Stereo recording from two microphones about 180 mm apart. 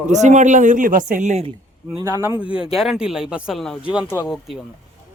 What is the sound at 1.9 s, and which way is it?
Speech, 20° right (ahead or behind).